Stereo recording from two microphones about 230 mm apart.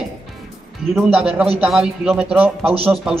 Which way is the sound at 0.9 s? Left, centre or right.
Centre.